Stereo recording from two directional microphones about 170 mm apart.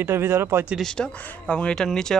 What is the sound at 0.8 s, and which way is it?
Speech, 5° left (ahead or behind).